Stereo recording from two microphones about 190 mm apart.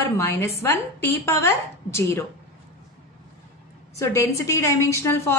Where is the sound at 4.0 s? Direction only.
15° left (ahead or behind).